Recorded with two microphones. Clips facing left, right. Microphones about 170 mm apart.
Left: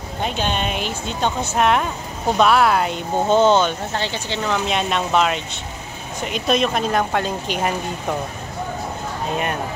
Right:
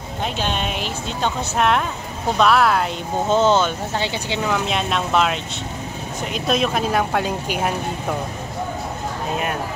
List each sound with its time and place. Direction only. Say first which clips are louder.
0.2 s speech: left 1 dB; centre (ahead or behind)